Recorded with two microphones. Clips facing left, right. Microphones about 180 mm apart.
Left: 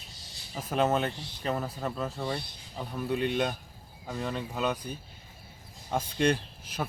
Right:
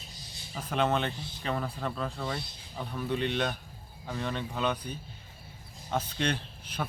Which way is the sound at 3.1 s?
10° left (ahead or behind).